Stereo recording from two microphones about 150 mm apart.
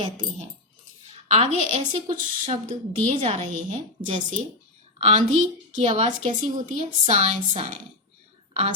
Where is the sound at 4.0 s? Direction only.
35° right (ahead or behind).